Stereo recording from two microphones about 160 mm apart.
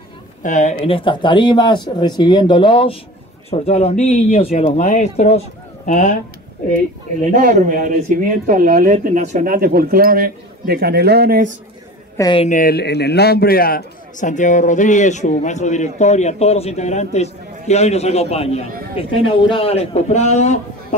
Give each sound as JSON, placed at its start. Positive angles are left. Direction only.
{"t": 0.4, "sound": "a man's voice", "side_deg": 50}
{"t": 7.3, "sound": "speech", "side_deg": -60}
{"t": 12.2, "sound": "speech", "side_deg": 30}
{"t": 12.4, "sound": "a man's voice", "side_deg": 60}